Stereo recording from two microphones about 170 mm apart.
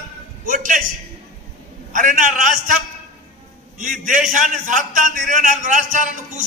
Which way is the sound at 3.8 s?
50° right (ahead or behind).